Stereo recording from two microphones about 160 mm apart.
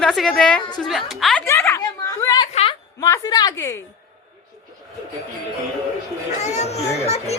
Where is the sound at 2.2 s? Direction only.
25° left (ahead or behind).